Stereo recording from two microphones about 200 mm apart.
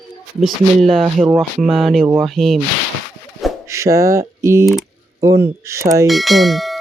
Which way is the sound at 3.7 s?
15° right (ahead or behind).